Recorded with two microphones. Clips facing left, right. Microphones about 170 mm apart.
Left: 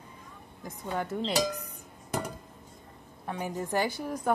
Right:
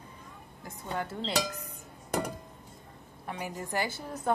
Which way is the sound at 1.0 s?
20° left (ahead or behind).